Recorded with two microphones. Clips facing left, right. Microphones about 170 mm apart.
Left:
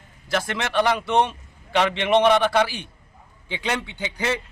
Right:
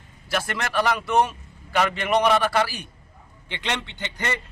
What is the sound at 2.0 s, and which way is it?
Speech, 25° left (ahead or behind).